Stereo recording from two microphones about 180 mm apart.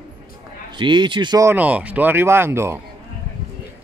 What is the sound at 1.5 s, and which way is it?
Speech, 10° right (ahead or behind).